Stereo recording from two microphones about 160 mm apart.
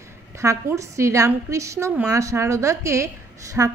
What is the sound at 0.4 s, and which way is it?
A woman's voice, 20° right (ahead or behind).